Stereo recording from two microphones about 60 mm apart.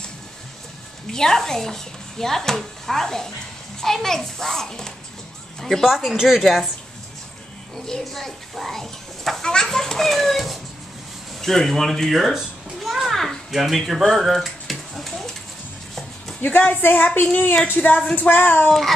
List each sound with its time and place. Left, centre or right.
1.1 s a woman's voice: centre
7.7 s a child's voice: centre
11.4 s a sound: centre
16.3 s a woman's voice: left
18.7 s a woman's voice: centre